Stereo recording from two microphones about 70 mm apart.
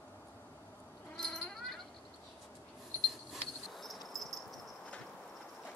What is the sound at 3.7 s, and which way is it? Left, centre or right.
Cricket, centre.